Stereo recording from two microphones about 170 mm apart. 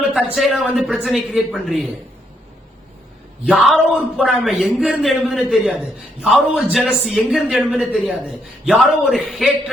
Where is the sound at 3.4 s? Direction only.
Centre (ahead or behind).